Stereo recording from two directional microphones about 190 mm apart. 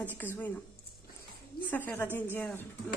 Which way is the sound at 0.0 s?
10° left (ahead or behind).